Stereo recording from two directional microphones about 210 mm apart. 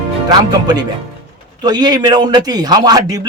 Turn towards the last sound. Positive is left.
turn(degrees=-20)  # may be behind; listen again after turning